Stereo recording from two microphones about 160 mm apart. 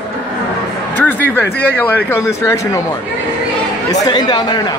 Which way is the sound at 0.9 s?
10° left (ahead or behind).